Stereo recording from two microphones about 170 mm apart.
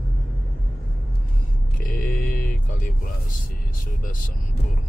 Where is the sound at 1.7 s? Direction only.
60° left (ahead or behind).